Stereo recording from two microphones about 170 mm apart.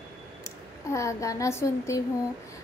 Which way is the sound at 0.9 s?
20° left (ahead or behind).